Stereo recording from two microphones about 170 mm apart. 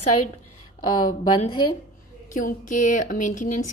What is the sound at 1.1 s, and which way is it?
Speech, 25° left (ahead or behind).